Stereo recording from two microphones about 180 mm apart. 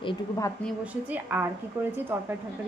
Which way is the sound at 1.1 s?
10° right (ahead or behind).